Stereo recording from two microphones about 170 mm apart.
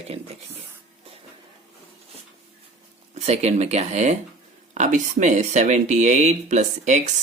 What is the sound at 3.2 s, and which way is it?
Speech, 40° right (ahead or behind).